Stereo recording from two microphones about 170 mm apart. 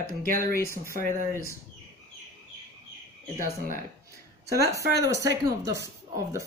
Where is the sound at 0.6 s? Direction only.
15° left (ahead or behind).